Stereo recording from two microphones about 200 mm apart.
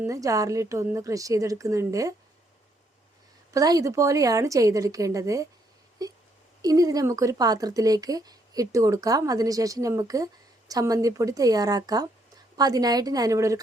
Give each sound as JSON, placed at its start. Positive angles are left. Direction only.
{"t": 0.0, "sound": "speech", "side_deg": -15}
{"t": 3.5, "sound": "speech", "side_deg": -15}
{"t": 6.0, "sound": "wail", "side_deg": -20}
{"t": 6.6, "sound": "a woman's voice", "side_deg": -15}